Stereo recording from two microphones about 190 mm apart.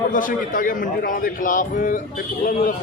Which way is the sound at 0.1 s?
45° left (ahead or behind).